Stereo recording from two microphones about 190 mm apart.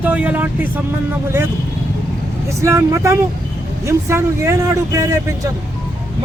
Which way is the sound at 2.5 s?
15° right (ahead or behind).